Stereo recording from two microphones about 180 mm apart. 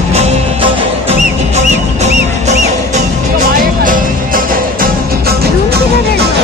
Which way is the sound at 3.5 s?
50° right (ahead or behind).